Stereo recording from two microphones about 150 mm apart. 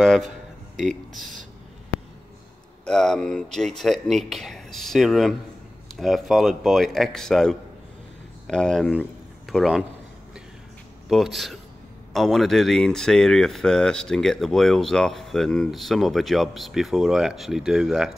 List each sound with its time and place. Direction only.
0.0 s speech: centre (ahead or behind)
1.1 s speech: 60° right (ahead or behind)
2.8 s speech: 5° left (ahead or behind)
11.1 s speech: centre (ahead or behind)